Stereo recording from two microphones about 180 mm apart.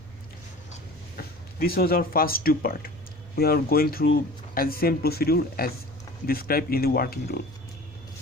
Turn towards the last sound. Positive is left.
turn(degrees=55)  # may be behind; listen again after turning